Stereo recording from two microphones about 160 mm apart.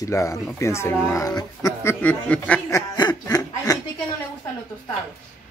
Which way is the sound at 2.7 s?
25° left (ahead or behind).